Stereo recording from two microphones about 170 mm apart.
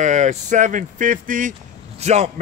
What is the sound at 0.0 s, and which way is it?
A man's voice, 45° right (ahead or behind).